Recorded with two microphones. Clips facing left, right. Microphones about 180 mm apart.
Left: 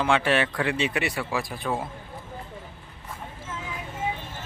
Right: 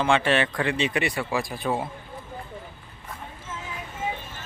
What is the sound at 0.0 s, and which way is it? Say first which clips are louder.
Speech: right 1 dB; 5° left (ahead or behind).